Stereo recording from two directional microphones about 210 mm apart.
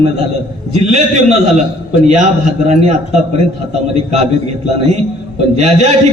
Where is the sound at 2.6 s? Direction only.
35° right (ahead or behind).